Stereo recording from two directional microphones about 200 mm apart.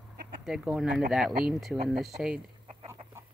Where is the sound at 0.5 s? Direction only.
5° right (ahead or behind).